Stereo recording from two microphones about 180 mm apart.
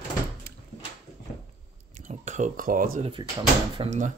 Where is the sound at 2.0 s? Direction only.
40° right (ahead or behind).